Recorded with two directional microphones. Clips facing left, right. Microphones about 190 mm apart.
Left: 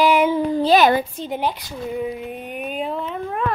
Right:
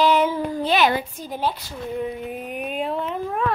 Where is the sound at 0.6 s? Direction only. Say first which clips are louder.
Left 5 dB; 45° left (ahead or behind).